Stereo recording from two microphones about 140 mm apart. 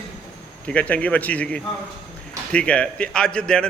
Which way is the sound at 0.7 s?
10° left (ahead or behind).